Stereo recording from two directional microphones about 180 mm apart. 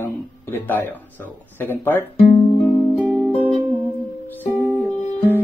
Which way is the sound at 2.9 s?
5° left (ahead or behind).